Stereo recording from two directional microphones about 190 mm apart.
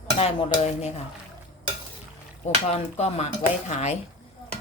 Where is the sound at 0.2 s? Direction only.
35° left (ahead or behind).